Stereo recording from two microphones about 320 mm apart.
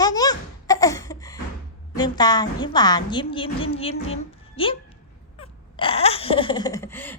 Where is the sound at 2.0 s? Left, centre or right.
Centre.